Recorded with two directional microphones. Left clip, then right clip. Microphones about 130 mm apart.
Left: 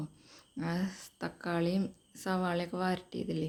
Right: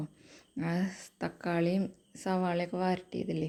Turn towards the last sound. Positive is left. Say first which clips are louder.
# right 2 dB
turn(degrees=-15)  # may be behind; listen again after turning